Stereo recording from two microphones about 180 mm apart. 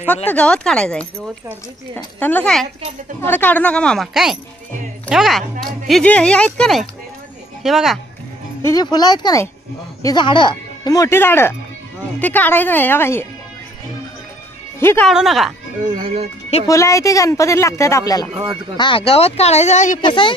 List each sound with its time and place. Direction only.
0.3 s speech: 5° left (ahead or behind)
2.1 s speech: 10° left (ahead or behind)
8.6 s speech: 20° left (ahead or behind)
14.8 s speech: 15° left (ahead or behind)
15.0 s speech: centre (ahead or behind)
16.0 s speech: 35° right (ahead or behind)
16.6 s speech: 15° left (ahead or behind); by 20.0 s 40° left (ahead or behind)
20.0 s speech: 25° left (ahead or behind)